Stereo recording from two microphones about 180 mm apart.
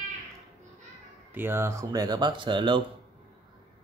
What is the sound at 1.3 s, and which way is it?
Speech, 10° right (ahead or behind).